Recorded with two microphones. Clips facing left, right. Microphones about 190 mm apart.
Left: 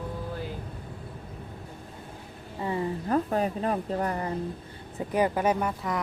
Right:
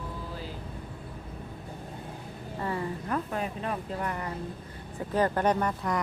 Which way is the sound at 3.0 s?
35° left (ahead or behind).